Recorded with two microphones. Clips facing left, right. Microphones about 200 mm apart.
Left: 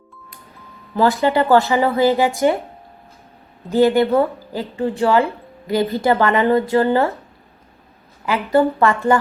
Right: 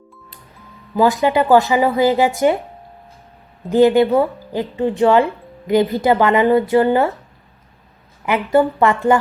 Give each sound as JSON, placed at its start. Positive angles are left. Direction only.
{"t": 0.9, "sound": "speech", "side_deg": -15}
{"t": 3.7, "sound": "speech", "side_deg": -15}
{"t": 8.2, "sound": "speech", "side_deg": -20}